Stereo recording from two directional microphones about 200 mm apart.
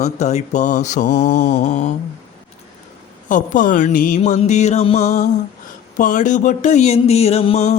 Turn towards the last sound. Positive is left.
turn(degrees=30)  # may be behind; listen again after turning